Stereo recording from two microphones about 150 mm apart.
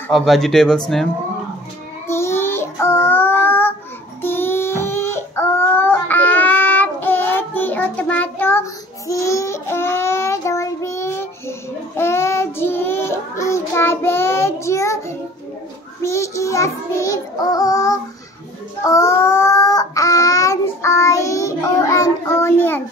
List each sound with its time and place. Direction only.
0.1 s speech: centre (ahead or behind)
2.0 s child singing: 15° left (ahead or behind)
4.2 s a sound: 15° left (ahead or behind)
12.0 s child singing: 15° left (ahead or behind)